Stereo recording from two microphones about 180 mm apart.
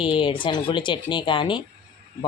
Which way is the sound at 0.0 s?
25° left (ahead or behind).